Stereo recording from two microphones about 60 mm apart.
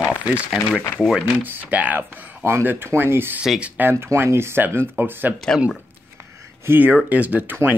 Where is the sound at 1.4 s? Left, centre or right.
Right.